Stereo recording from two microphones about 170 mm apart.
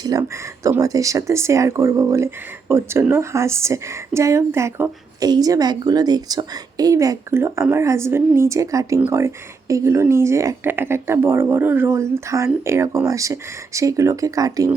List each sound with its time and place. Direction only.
0.0 s speech: 20° right (ahead or behind)